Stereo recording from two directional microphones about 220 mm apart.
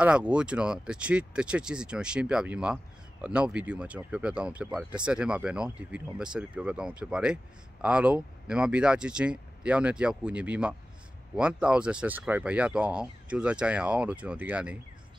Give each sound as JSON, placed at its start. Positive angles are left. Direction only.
{"t": 0.0, "sound": "speech", "side_deg": -5}